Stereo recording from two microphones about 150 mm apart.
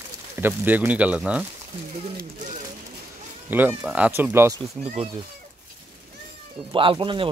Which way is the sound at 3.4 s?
10° right (ahead or behind).